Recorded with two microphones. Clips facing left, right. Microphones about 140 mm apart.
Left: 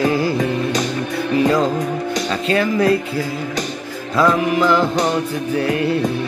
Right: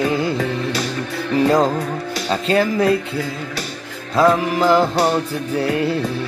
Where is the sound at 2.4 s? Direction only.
30° right (ahead or behind).